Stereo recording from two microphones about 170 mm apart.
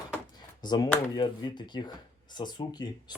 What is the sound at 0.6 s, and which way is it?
Speech, 25° left (ahead or behind).